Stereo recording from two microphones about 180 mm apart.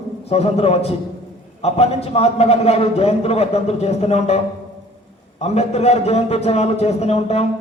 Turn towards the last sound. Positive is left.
turn(degrees=35)  # may be behind; listen again after turning